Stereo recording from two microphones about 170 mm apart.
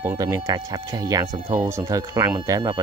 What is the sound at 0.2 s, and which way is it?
Speech, 20° right (ahead or behind).